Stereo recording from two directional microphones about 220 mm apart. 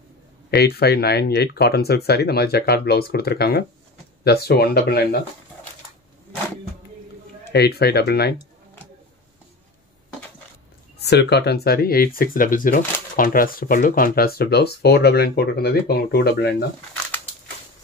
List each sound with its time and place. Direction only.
0.5 s speech: 45° left (ahead or behind)
7.5 s speech: 45° left (ahead or behind)
11.0 s speech: 50° left (ahead or behind)